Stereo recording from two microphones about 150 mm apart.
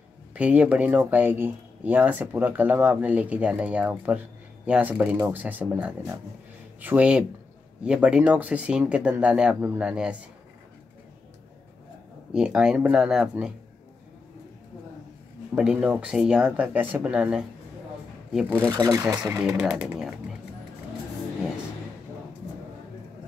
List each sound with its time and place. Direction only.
0.3 s speech: 10° right (ahead or behind)
12.3 s speech: 5° right (ahead or behind)
15.5 s speech: 5° right (ahead or behind)
18.7 s speech: 25° right (ahead or behind)
19.4 s speech: 5° right (ahead or behind)